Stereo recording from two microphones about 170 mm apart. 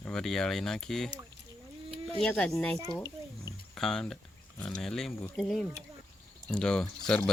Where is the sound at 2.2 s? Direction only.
5° left (ahead or behind).